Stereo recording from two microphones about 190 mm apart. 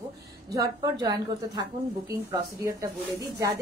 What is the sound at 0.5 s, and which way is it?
A woman's voice, 20° right (ahead or behind).